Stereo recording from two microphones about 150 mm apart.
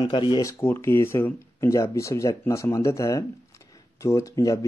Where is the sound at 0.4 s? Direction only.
20° left (ahead or behind).